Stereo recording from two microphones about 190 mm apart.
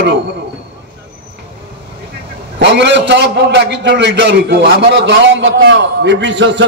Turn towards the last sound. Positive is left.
turn(degrees=-70)  # may be behind; listen again after turning